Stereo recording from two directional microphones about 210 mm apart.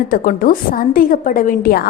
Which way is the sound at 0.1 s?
40° left (ahead or behind).